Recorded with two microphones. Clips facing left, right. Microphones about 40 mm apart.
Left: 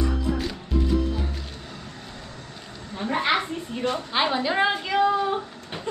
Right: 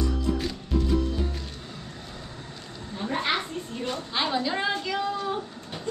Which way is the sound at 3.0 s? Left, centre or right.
Centre.